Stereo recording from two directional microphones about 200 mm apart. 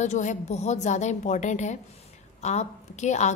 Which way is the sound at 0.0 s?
35° left (ahead or behind).